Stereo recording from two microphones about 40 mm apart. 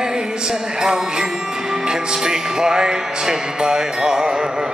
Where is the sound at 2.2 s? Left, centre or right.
Centre.